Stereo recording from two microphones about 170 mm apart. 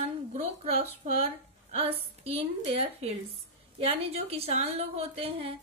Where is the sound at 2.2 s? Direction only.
35° right (ahead or behind).